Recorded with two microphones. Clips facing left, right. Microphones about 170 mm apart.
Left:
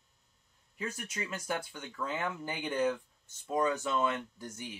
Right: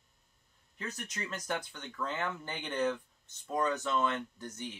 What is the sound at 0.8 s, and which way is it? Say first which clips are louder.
Speech: left 2 dB; 10° left (ahead or behind).